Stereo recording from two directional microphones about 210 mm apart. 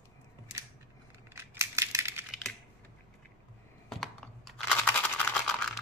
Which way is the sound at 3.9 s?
Centre (ahead or behind).